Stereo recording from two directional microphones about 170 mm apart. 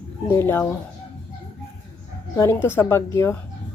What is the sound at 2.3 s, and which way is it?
A woman's voice, 15° left (ahead or behind).